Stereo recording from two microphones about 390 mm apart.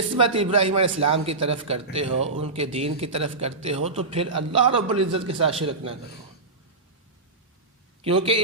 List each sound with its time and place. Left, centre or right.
0.3 s speech: centre
0.8 s a man's voice: right
1.1 s speech: centre
8.0 s speech: centre